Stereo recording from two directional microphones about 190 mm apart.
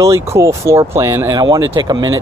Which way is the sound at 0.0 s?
15° right (ahead or behind).